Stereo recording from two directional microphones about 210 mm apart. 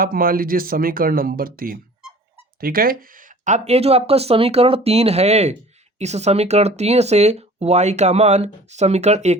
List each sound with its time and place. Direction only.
0.0 s speech: 45° right (ahead or behind)